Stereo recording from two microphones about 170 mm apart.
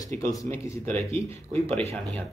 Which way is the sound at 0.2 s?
20° left (ahead or behind).